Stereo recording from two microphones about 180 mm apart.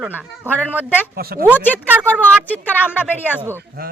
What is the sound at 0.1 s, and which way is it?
Speech, 10° right (ahead or behind).